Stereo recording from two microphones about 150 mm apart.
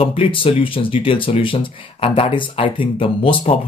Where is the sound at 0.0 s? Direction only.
35° left (ahead or behind).